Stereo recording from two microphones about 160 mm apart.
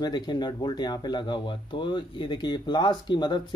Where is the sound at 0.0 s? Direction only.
25° left (ahead or behind).